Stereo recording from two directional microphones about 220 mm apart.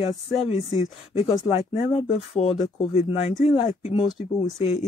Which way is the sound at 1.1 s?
25° left (ahead or behind).